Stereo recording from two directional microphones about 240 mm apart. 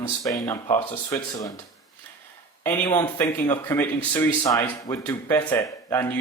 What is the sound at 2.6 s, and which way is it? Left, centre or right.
Speech, centre.